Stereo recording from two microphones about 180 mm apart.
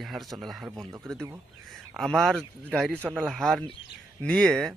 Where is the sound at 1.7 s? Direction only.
Centre (ahead or behind).